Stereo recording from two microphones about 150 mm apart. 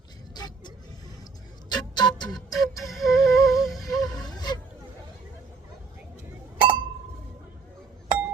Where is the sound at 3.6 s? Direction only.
Centre (ahead or behind).